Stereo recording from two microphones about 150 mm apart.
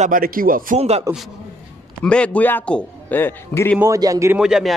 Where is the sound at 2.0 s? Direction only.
10° left (ahead or behind).